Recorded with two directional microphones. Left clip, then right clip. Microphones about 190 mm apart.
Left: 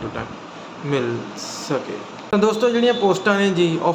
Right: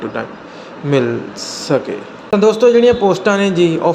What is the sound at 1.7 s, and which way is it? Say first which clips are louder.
A man's voice: right 9 dB; 25° right (ahead or behind).